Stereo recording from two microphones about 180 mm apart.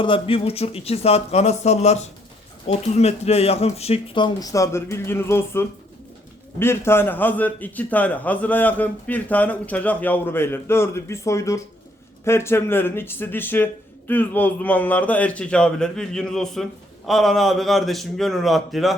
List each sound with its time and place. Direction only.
0.0 s a man's voice: 30° left (ahead or behind); by 18.9 s centre (ahead or behind)